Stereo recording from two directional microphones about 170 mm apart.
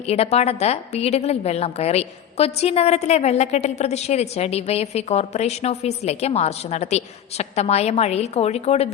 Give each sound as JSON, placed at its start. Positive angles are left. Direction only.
{"t": 0.1, "sound": "a woman's voice", "side_deg": 40}